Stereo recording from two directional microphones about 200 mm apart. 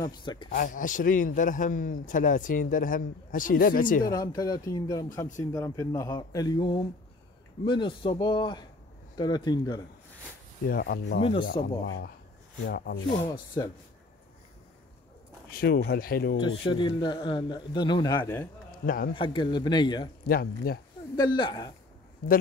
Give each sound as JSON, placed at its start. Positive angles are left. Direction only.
{"t": 0.0, "sound": "a man's voice", "side_deg": 20}
{"t": 0.5, "sound": "a man's voice", "side_deg": 45}
{"t": 4.1, "sound": "a man's voice", "side_deg": 20}
{"t": 10.7, "sound": "a man's voice", "side_deg": 50}
{"t": 11.1, "sound": "a man's voice", "side_deg": 30}
{"t": 12.5, "sound": "speech", "side_deg": 55}
{"t": 13.5, "sound": "a man's voice", "side_deg": 15}
{"t": 15.5, "sound": "a man's voice", "side_deg": 50}
{"t": 16.3, "sound": "a man's voice", "side_deg": 25}
{"t": 18.7, "sound": "a man's voice", "side_deg": 45}
{"t": 19.1, "sound": "a man's voice", "side_deg": 25}
{"t": 20.2, "sound": "a man's voice", "side_deg": 50}
{"t": 21.2, "sound": "a man's voice", "side_deg": 25}